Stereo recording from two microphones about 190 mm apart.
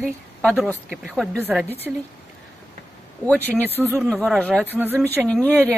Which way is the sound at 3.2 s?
5° left (ahead or behind).